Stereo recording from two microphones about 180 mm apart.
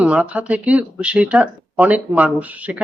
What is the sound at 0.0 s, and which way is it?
Speech, 5° right (ahead or behind).